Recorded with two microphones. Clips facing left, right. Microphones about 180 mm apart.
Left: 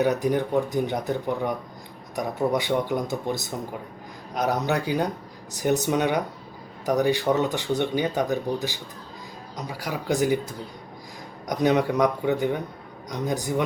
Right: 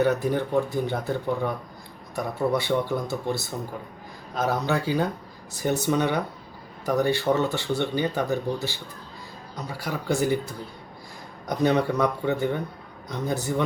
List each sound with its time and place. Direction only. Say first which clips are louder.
0.0 s speech: even; 15° left (ahead or behind)
11.4 s speech: left 1 dB; 15° left (ahead or behind)